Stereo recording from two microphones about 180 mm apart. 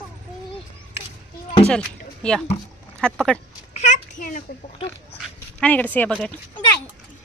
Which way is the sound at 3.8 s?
45° left (ahead or behind).